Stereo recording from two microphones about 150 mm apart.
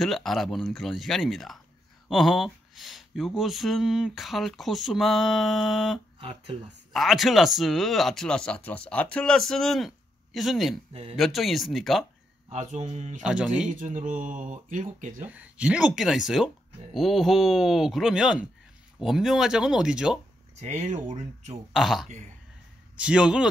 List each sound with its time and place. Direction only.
0.0 s speech: centre (ahead or behind)
10.9 s speech: 40° right (ahead or behind)
11.1 s speech: centre (ahead or behind)
12.4 s mantra: 45° right (ahead or behind)
13.2 s speech: 5° right (ahead or behind)
13.7 s speech: 60° right (ahead or behind)
15.2 s speech: 10° right (ahead or behind)
20.6 s mantra: 50° right (ahead or behind)
21.7 s speech: centre (ahead or behind)